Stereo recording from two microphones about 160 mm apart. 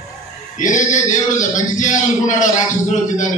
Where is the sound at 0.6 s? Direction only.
55° left (ahead or behind).